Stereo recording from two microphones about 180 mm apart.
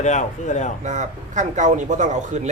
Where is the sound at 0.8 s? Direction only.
40° right (ahead or behind).